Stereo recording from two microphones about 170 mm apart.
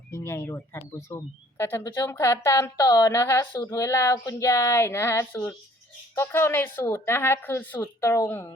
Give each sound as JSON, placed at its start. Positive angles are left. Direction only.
{"t": 0.1, "sound": "speech", "side_deg": 15}